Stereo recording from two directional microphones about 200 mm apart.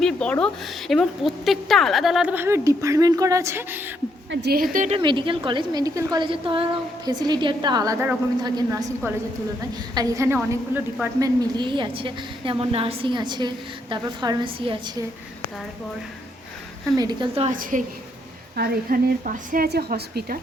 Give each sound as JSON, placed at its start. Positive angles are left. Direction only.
{"t": 0.0, "sound": "a woman's voice", "side_deg": 5}
{"t": 4.3, "sound": "a woman's voice", "side_deg": -55}
{"t": 4.9, "sound": "a woman's voice", "side_deg": -25}
{"t": 16.9, "sound": "a woman's voice", "side_deg": -20}
{"t": 17.6, "sound": "a woman's voice", "side_deg": -40}